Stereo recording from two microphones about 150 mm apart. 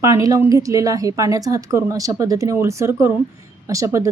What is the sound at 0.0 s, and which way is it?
A woman's voice, 20° right (ahead or behind).